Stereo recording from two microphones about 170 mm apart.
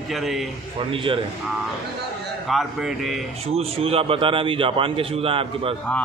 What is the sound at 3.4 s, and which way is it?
A man's voice, 35° right (ahead or behind).